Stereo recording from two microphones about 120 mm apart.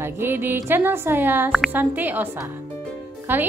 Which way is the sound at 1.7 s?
15° right (ahead or behind).